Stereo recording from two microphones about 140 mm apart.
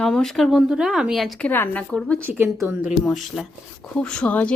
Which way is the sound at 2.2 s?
15° right (ahead or behind).